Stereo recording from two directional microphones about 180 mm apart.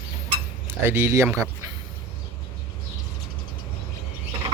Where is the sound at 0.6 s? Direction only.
15° right (ahead or behind).